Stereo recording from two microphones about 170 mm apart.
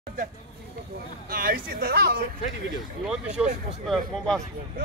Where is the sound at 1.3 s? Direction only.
60° right (ahead or behind).